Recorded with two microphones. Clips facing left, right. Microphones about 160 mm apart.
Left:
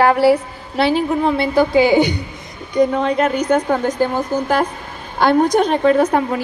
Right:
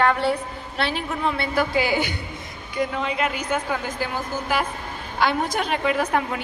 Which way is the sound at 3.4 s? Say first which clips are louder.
Left 9 dB; 40° left (ahead or behind).